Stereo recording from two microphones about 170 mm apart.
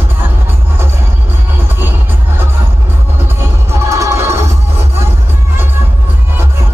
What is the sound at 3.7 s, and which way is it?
Music, 20° right (ahead or behind).